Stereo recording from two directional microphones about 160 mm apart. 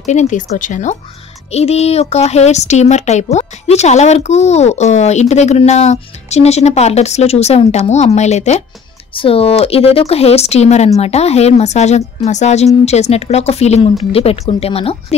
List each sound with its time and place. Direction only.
0.0 s a child's voice: 45° left (ahead or behind)
1.5 s a child's voice: 40° left (ahead or behind)